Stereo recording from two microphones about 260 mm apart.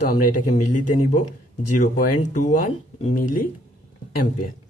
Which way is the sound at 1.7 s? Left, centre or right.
Left.